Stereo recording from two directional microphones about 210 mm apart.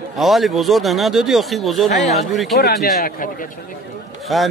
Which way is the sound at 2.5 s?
50° left (ahead or behind).